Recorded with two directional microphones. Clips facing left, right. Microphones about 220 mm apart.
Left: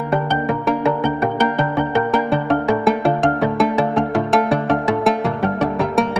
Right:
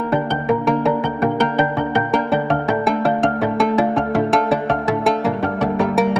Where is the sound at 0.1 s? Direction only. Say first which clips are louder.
Right 1 dB; centre (ahead or behind).